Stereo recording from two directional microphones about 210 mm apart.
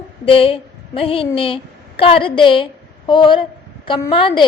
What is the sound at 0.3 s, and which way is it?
A woman's voice, 25° left (ahead or behind).